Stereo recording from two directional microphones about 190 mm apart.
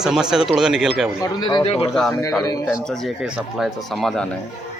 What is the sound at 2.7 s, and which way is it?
A man's voice, centre (ahead or behind).